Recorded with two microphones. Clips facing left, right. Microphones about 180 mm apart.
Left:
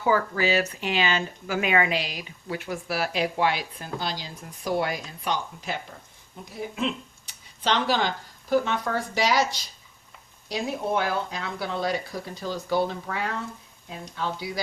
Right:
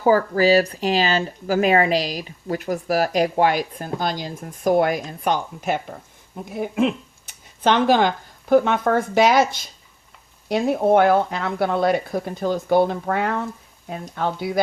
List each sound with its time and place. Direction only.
0.0 s speech: 40° right (ahead or behind); by 14.6 s 55° right (ahead or behind)